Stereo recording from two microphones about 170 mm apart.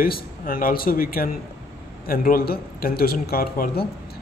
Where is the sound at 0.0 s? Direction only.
55° left (ahead or behind).